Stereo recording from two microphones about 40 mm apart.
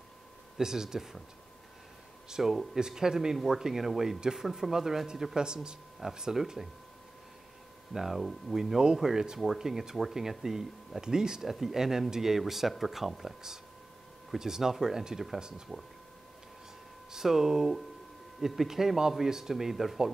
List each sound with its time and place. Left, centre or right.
0.6 s speech: centre
2.2 s speech: centre
7.9 s speech: centre
17.1 s speech: centre